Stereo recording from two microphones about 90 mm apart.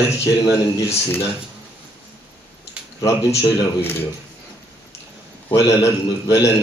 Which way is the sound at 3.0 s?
35° left (ahead or behind).